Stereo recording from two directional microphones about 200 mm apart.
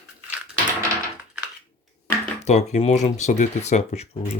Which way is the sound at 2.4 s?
35° left (ahead or behind).